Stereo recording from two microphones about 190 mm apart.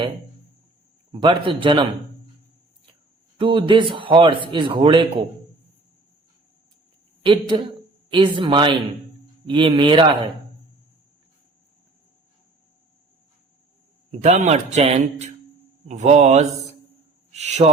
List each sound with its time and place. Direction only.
1.1 s a man's voice: 25° right (ahead or behind)
3.3 s a man's voice: 25° right (ahead or behind)
7.3 s a man's voice: 25° right (ahead or behind)
14.1 s a man's voice: 35° right (ahead or behind)